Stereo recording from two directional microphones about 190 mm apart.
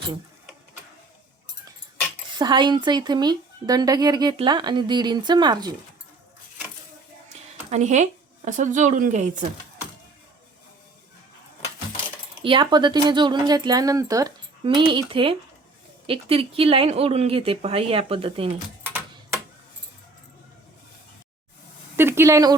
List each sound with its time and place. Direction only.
2.4 s speech: 25° right (ahead or behind)
7.7 s speech: 40° right (ahead or behind)
12.4 s speech: 25° right (ahead or behind)
18.8 s typing: 10° right (ahead or behind)
21.9 s a woman's voice: 10° right (ahead or behind)